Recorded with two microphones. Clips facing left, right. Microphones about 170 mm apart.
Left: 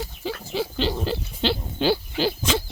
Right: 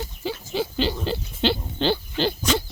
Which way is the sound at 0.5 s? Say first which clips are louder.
Right 1 dB; centre (ahead or behind).